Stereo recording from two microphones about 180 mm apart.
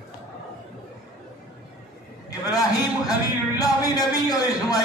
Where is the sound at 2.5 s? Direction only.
20° left (ahead or behind).